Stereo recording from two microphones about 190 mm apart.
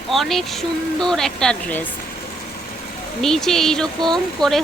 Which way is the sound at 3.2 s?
Centre (ahead or behind).